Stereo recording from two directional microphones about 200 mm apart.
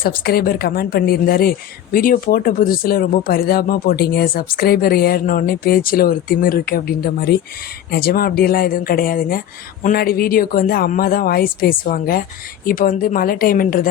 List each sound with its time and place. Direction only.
0.0 s a woman's voice: 50° left (ahead or behind)